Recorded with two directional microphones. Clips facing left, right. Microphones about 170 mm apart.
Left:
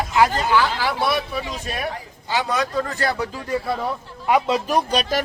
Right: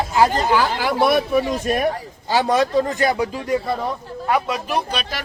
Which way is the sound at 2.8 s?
15° right (ahead or behind).